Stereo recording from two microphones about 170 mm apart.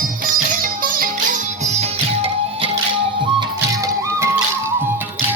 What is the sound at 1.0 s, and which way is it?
Music, 45° right (ahead or behind).